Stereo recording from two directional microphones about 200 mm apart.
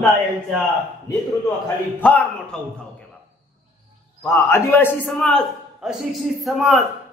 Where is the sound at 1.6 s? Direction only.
10° left (ahead or behind).